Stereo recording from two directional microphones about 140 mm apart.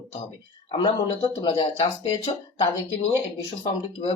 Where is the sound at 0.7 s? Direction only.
40° left (ahead or behind).